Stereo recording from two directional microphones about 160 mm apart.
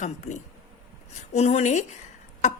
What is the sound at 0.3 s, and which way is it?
A woman's voice, 40° left (ahead or behind).